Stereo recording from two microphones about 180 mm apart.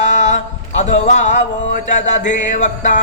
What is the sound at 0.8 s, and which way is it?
Music, 40° left (ahead or behind).